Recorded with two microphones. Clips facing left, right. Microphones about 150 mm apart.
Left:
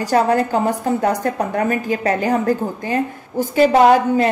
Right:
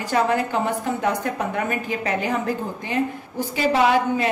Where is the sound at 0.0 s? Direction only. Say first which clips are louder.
Left 5 dB; 40° left (ahead or behind).